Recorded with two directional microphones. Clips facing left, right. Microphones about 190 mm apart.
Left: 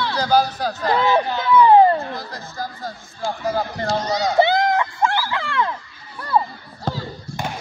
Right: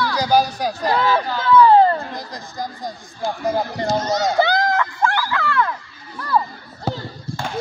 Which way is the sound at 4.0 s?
45° right (ahead or behind).